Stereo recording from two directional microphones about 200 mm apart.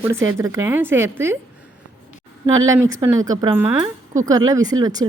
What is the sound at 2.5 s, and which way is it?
A woman's voice, 15° right (ahead or behind).